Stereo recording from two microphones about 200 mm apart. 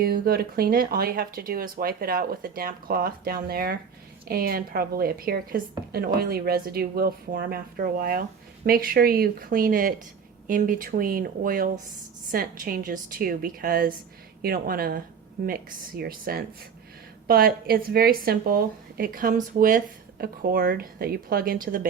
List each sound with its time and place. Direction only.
0.0 s speech: 50° right (ahead or behind)